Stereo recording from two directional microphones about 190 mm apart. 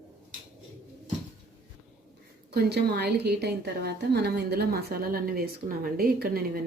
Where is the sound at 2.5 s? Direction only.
60° right (ahead or behind).